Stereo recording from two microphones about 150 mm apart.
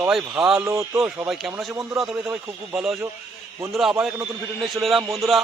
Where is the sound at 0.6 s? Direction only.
20° right (ahead or behind).